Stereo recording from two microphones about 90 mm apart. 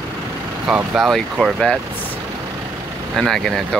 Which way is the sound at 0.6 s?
10° right (ahead or behind).